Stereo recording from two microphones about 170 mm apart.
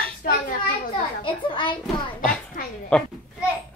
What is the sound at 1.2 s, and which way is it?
Speech, 30° left (ahead or behind).